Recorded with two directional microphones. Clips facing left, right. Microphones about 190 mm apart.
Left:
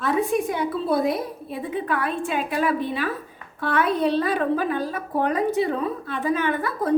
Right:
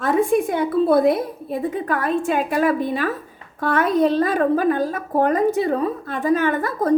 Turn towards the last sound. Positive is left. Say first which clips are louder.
# right 3 dB
turn(degrees=-40)  # may be behind; listen again after turning